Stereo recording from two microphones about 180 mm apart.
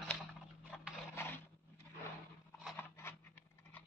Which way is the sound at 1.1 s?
15° left (ahead or behind).